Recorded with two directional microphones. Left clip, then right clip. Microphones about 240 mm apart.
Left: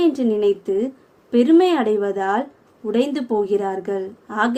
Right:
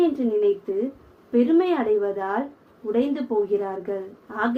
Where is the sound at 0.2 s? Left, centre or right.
Left.